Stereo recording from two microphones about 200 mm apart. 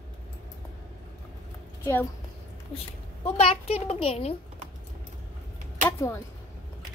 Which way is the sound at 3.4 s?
30° left (ahead or behind).